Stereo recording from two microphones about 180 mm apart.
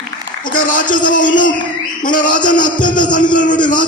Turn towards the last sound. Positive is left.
turn(degrees=45)  # may be behind; listen again after turning